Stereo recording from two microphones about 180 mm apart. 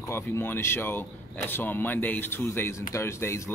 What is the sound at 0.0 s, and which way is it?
Speech, 15° left (ahead or behind).